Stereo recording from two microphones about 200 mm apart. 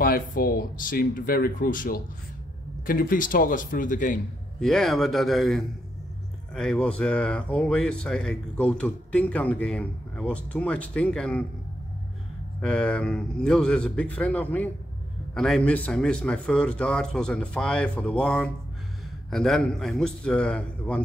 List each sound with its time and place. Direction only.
0.0 s speech: 45° left (ahead or behind)
4.6 s speech: 5° left (ahead or behind)
12.6 s speech: 5° left (ahead or behind)